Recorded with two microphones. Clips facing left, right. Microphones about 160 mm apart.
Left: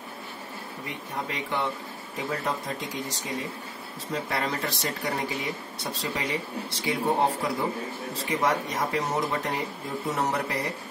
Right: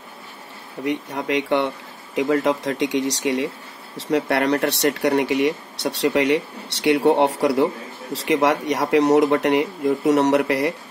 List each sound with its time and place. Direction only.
0.8 s speech: 80° right
2.1 s speech: 90° right